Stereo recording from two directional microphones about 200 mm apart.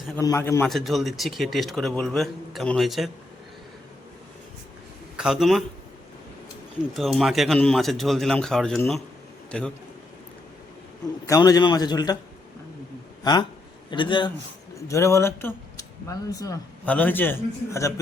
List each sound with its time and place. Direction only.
0.2 s speech: 15° left (ahead or behind)
0.7 s a man's voice: centre (ahead or behind)
5.1 s a man's voice: 5° right (ahead or behind)
6.9 s a man's voice: centre (ahead or behind)
11.3 s a man's voice: 20° left (ahead or behind)
13.9 s a man's voice: 25° left (ahead or behind)